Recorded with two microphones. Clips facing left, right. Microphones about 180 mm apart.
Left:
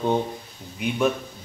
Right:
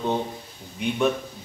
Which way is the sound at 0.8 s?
5° left (ahead or behind).